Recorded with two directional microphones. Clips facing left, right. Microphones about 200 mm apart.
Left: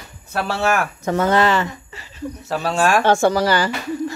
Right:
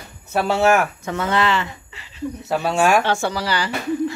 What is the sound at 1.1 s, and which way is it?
Speech, 40° left (ahead or behind).